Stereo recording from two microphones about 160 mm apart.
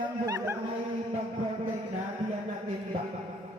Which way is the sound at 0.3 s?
20° right (ahead or behind).